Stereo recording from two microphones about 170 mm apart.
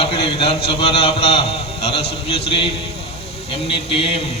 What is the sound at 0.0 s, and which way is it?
A man's voice, 35° left (ahead or behind).